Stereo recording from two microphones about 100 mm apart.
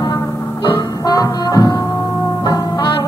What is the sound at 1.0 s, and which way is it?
Music, 35° left (ahead or behind).